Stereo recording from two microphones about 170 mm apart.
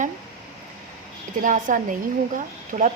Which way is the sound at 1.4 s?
50° right (ahead or behind).